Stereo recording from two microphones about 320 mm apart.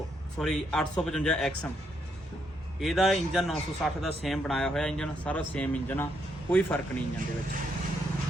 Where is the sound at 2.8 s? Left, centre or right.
Centre.